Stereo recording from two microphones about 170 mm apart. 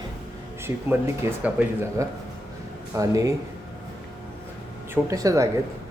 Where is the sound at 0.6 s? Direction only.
15° right (ahead or behind).